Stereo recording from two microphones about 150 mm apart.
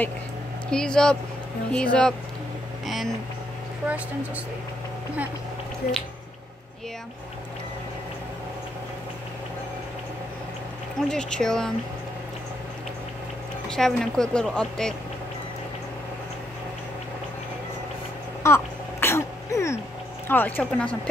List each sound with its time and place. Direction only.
0.7 s a woman's voice: 5° left (ahead or behind)
11.1 s a woman's voice: 5° left (ahead or behind)
13.7 s a woman's voice: 5° left (ahead or behind)
18.4 s throat clearing: 15° left (ahead or behind)
20.2 s speech: 15° left (ahead or behind)